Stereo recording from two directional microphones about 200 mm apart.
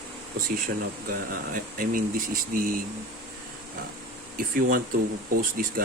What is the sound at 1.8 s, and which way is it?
Speech, 45° right (ahead or behind).